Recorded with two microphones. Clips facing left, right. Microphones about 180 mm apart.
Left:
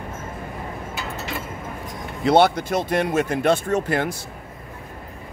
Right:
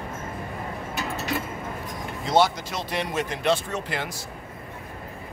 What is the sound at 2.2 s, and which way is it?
Speech, 60° left (ahead or behind).